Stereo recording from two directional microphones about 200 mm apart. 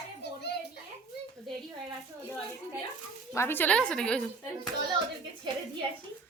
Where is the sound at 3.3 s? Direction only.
10° left (ahead or behind).